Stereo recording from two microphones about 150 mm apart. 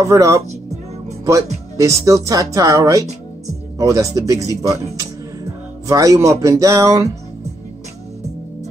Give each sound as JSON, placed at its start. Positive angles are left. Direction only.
{"t": 0.0, "sound": "speech", "side_deg": -20}
{"t": 1.8, "sound": "speech", "side_deg": -20}